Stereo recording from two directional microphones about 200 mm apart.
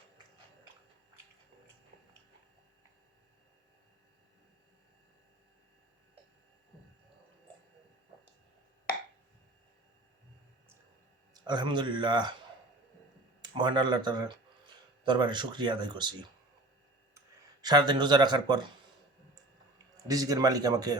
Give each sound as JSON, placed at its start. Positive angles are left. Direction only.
{"t": 11.3, "sound": "speech", "side_deg": -20}
{"t": 13.4, "sound": "speech", "side_deg": -20}
{"t": 17.6, "sound": "speech", "side_deg": -20}
{"t": 20.1, "sound": "speech", "side_deg": -20}